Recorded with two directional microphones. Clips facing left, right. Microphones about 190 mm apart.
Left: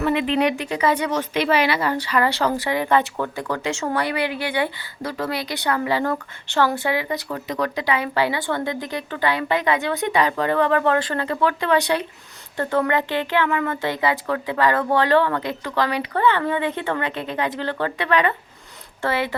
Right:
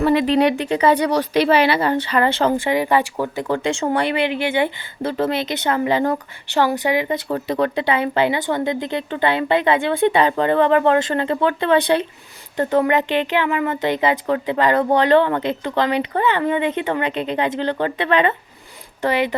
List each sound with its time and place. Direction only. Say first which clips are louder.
0.0 s speech: right 4 dB; 35° right (ahead or behind); by 7.2 s 20° right (ahead or behind)
7.3 s speech: right 5 dB; 30° right (ahead or behind)